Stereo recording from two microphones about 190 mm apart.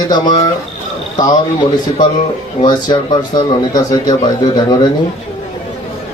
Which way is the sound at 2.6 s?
25° left (ahead or behind).